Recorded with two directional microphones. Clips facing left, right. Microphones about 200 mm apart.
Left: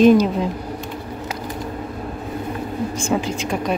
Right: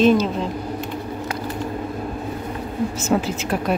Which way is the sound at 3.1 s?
5° right (ahead or behind).